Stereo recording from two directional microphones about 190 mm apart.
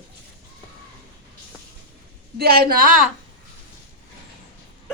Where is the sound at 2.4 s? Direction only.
50° right (ahead or behind).